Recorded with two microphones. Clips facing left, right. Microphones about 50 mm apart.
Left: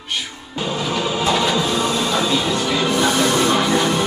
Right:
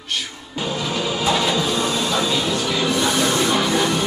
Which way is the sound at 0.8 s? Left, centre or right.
Centre.